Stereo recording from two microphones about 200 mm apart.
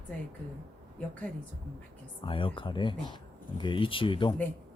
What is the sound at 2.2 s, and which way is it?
Speech, 25° left (ahead or behind).